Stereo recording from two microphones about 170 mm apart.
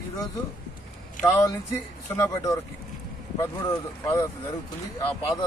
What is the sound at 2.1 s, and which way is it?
A man's voice, 15° left (ahead or behind).